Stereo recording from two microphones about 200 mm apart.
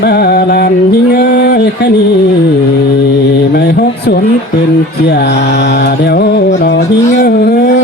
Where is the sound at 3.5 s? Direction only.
50° left (ahead or behind).